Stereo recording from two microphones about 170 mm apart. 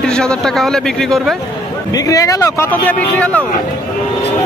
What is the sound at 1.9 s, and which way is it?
Speech, 20° left (ahead or behind).